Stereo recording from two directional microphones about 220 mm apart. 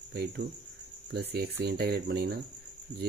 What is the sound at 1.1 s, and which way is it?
Speech, 50° right (ahead or behind).